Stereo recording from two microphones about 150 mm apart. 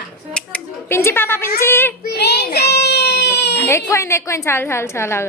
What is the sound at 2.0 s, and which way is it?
Baby cry, 90° left.